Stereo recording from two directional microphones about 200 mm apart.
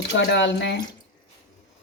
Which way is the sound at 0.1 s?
60° left (ahead or behind).